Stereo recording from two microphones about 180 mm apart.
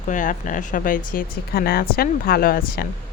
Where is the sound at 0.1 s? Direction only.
45° left (ahead or behind).